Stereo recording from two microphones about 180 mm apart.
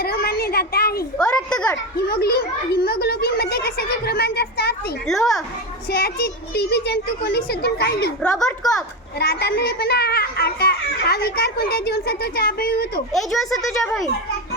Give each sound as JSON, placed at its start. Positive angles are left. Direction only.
{"t": 0.0, "sound": "a sound", "side_deg": 60}
{"t": 1.2, "sound": "speech", "side_deg": 5}
{"t": 2.0, "sound": "a child's voice", "side_deg": 60}
{"t": 5.0, "sound": "speech", "side_deg": 0}
{"t": 5.9, "sound": "a child's voice", "side_deg": 60}
{"t": 8.2, "sound": "speech", "side_deg": 5}
{"t": 9.1, "sound": "a child's voice", "side_deg": 65}
{"t": 13.1, "sound": "speech", "side_deg": 0}